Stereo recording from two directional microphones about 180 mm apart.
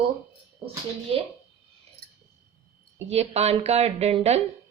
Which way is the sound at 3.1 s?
35° right (ahead or behind).